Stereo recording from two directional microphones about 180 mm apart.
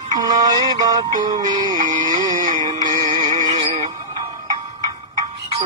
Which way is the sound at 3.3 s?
45° right (ahead or behind).